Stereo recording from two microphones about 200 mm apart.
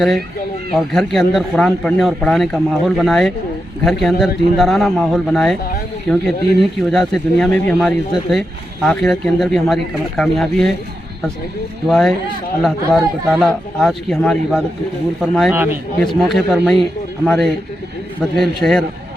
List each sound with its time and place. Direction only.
0.7 s speech: centre (ahead or behind)
11.9 s speech: 5° left (ahead or behind)